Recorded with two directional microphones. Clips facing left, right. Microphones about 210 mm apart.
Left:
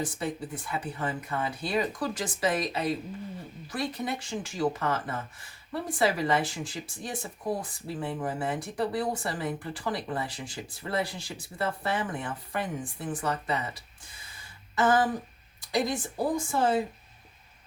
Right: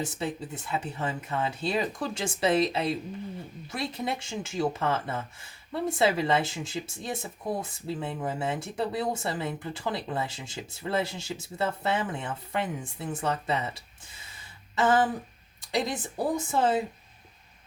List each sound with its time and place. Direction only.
0.0 s speech: 25° right (ahead or behind)
14.3 s a sound: 25° right (ahead or behind)
15.7 s speech: 20° right (ahead or behind)